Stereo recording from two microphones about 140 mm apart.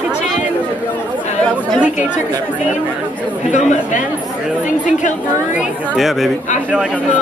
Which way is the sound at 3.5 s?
60° left (ahead or behind).